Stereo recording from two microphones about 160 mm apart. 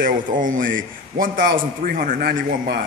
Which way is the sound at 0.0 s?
60° right (ahead or behind).